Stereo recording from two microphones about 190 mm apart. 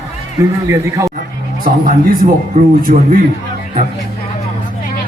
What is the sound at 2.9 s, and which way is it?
Speech, 40° right (ahead or behind).